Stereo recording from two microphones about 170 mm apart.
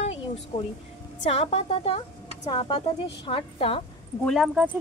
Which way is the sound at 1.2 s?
40° left (ahead or behind).